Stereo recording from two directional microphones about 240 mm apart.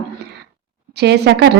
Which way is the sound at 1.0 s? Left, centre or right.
Right.